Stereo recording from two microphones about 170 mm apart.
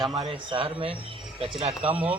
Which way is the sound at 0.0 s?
30° right (ahead or behind).